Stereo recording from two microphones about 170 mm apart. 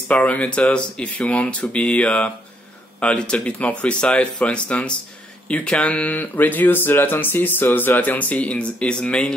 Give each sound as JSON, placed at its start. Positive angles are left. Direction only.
{"t": 0.1, "sound": "speech", "side_deg": 10}